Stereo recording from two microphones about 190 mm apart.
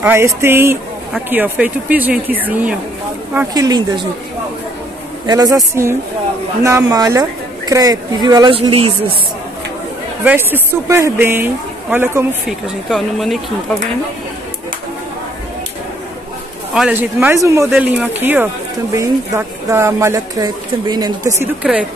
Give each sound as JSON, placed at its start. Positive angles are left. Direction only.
{"t": 0.0, "sound": "speech", "side_deg": -10}
{"t": 3.3, "sound": "speech", "side_deg": -20}
{"t": 5.2, "sound": "speech", "side_deg": -20}
{"t": 10.2, "sound": "speech", "side_deg": -10}
{"t": 12.9, "sound": "speech", "side_deg": 0}
{"t": 16.7, "sound": "speech", "side_deg": -5}